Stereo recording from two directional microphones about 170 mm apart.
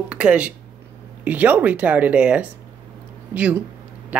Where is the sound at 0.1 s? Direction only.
5° right (ahead or behind).